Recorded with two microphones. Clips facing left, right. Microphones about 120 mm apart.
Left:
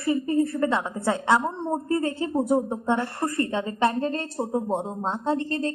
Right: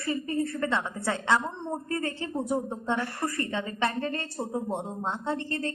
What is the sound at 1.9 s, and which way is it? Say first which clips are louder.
A woman's voice: left 6 dB; 15° left (ahead or behind).